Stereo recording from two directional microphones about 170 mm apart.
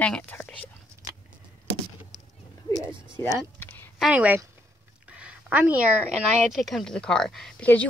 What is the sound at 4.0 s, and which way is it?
Speech, 5° right (ahead or behind).